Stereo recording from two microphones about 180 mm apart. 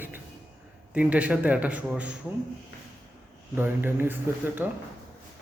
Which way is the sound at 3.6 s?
10° right (ahead or behind).